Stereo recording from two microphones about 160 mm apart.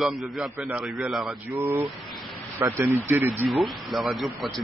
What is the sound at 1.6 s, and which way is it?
Speech, 25° right (ahead or behind).